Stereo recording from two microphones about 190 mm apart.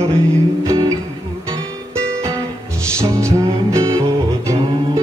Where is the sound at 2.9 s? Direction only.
15° right (ahead or behind).